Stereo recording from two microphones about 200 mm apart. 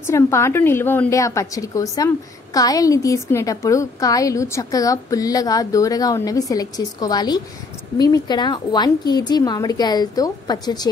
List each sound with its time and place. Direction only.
0.0 s a woman's voice: 15° left (ahead or behind)